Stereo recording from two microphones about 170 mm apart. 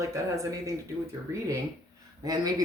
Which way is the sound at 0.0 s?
20° right (ahead or behind).